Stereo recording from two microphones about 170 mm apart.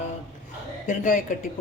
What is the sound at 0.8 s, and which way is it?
Speech, 50° left (ahead or behind).